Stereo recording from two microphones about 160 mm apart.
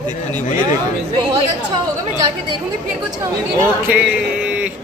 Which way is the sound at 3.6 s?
10° right (ahead or behind).